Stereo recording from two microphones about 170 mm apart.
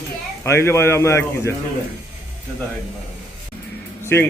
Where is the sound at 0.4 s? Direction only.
15° left (ahead or behind).